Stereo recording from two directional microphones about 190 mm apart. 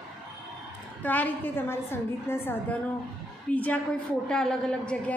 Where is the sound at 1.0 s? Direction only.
10° left (ahead or behind).